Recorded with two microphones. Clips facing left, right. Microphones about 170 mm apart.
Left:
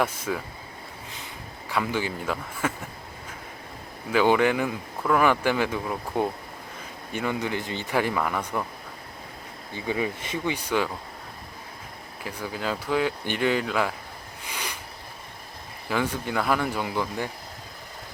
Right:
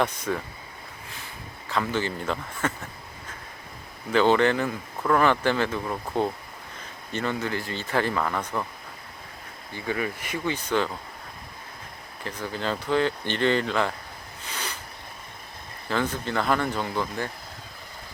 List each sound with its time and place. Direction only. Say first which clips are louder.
0.0 s speech: right 1 dB; 5° left (ahead or behind)
1.7 s speech: even; 10° left (ahead or behind)
4.1 s speech: even; 10° left (ahead or behind)
9.7 s speech: left 1 dB; 15° left (ahead or behind)
10.5 s speech: right 1 dB; 10° left (ahead or behind)
12.2 s speech: right 1 dB; 10° left (ahead or behind)
14.4 s a sound: even; 10° left (ahead or behind)
15.9 s speech: even; 10° left (ahead or behind)